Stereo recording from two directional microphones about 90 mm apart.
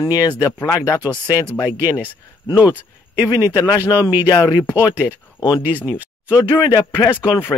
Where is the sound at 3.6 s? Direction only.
35° left (ahead or behind).